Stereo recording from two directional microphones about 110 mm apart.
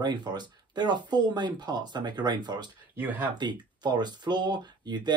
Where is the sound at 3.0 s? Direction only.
15° right (ahead or behind).